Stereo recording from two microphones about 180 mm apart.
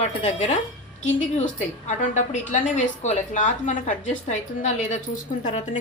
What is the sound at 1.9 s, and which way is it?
Speech, 40° left (ahead or behind).